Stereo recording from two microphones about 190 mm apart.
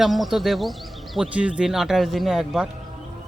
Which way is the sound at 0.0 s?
Centre (ahead or behind).